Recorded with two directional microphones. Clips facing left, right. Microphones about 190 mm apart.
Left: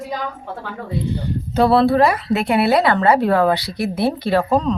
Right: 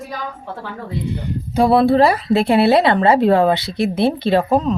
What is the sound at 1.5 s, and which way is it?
Speech, 10° right (ahead or behind).